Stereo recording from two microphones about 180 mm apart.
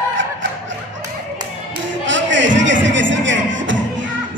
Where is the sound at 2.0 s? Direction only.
90° right.